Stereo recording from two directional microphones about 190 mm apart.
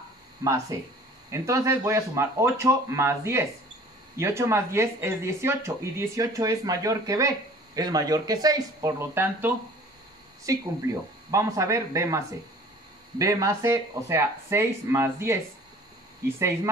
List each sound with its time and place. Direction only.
0.4 s speech: 15° right (ahead or behind)
13.2 s speech: 15° right (ahead or behind)